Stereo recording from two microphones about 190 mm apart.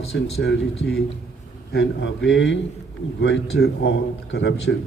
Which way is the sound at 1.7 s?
65° left (ahead or behind).